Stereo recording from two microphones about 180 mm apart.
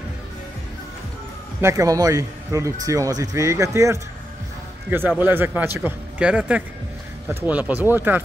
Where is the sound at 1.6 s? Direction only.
20° right (ahead or behind).